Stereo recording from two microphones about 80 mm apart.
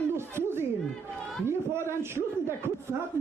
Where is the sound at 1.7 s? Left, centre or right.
Right.